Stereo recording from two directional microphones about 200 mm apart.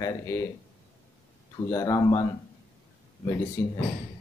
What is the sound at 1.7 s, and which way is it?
Speech, 15° left (ahead or behind).